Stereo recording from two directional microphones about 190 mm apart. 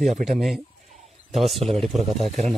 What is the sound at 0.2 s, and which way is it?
A man's voice, centre (ahead or behind).